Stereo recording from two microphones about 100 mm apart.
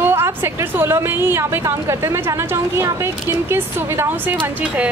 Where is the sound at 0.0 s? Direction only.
25° right (ahead or behind).